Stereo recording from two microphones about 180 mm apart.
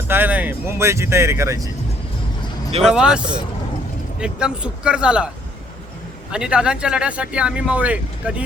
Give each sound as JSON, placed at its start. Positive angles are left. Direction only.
{"t": 0.1, "sound": "speech", "side_deg": -10}
{"t": 2.8, "sound": "speech", "side_deg": -5}
{"t": 6.3, "sound": "speech", "side_deg": -5}